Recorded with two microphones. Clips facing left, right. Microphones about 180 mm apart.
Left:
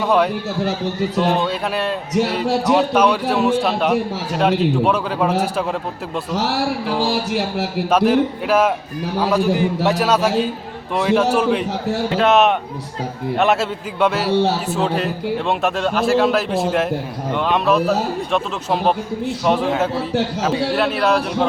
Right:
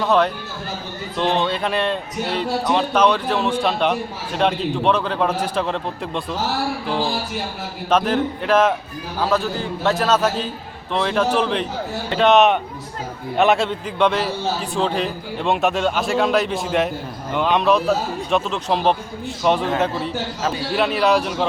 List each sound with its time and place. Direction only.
1.1 s a man's voice: 5° left (ahead or behind)
7.1 s speech: 75° left (ahead or behind)
7.9 s a man's voice: 10° left (ahead or behind)